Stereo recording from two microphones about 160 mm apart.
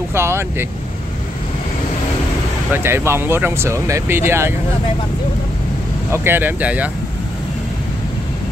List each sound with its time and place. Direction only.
0.1 s vehicle: 15° right (ahead or behind)
2.7 s speech: 15° right (ahead or behind)
6.1 s speech: 15° right (ahead or behind)